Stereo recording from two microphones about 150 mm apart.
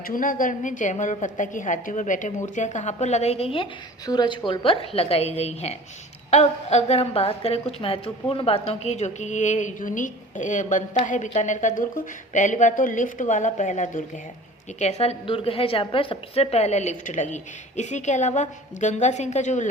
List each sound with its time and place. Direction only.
0.1 s a woman's voice: 65° left (ahead or behind); by 3.7 s 40° left (ahead or behind)
4.0 s a woman's voice: 30° left (ahead or behind); by 19.6 s 55° left (ahead or behind)